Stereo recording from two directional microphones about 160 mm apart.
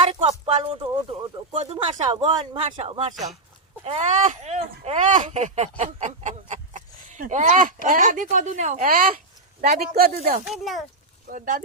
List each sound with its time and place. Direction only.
0.1 s speech: 35° right (ahead or behind); by 10.1 s 70° right (ahead or behind)
10.4 s speech: centre (ahead or behind)
11.3 s speech: 55° right (ahead or behind)